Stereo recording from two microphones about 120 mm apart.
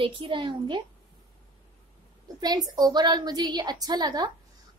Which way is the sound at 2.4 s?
35° right (ahead or behind).